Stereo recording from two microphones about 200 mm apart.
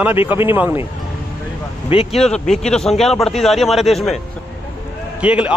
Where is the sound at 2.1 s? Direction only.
Centre (ahead or behind).